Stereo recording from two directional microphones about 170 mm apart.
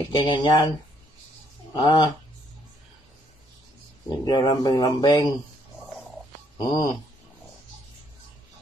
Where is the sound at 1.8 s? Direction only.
30° left (ahead or behind).